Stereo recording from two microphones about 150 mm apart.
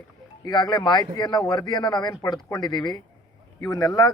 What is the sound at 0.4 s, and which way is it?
Speech, 25° left (ahead or behind).